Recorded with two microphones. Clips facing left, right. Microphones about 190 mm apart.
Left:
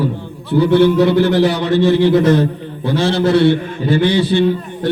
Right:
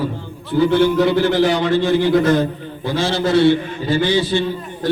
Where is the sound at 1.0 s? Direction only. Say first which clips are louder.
Left 3 dB; 65° left (ahead or behind).